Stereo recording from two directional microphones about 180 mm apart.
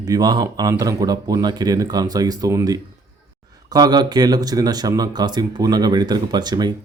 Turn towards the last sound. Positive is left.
turn(degrees=-25)  # may be behind; listen again after turning